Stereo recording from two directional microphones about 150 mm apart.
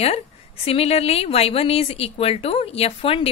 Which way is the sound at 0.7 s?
40° left (ahead or behind).